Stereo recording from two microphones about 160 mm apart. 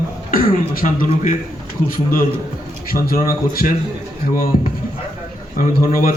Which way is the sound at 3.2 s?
65° left (ahead or behind).